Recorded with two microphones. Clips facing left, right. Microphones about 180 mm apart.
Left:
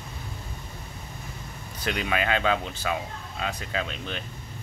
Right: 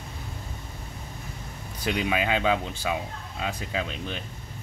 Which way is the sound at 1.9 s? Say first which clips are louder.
Right 1 dB; 5° right (ahead or behind).